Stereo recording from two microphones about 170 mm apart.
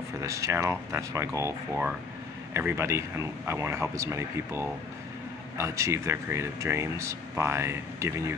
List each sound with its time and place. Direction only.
0.2 s speech: 20° right (ahead or behind)